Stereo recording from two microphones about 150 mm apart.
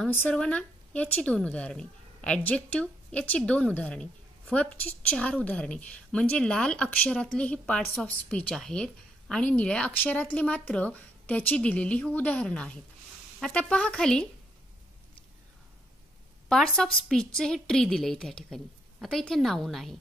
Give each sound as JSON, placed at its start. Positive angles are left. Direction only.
{"t": 0.0, "sound": "a woman's voice", "side_deg": 10}
{"t": 16.4, "sound": "a woman's voice", "side_deg": 5}